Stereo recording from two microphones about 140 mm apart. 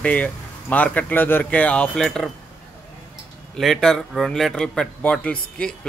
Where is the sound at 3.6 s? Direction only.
5° left (ahead or behind).